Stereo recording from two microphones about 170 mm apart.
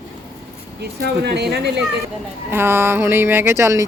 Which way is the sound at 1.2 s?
75° right (ahead or behind).